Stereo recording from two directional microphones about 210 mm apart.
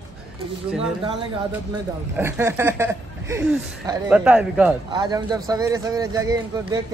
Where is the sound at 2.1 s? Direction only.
10° right (ahead or behind).